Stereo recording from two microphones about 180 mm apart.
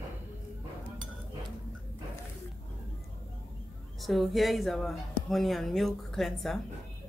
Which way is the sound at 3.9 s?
Centre (ahead or behind).